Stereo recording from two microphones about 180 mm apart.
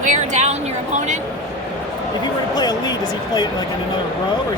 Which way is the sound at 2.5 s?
20° left (ahead or behind).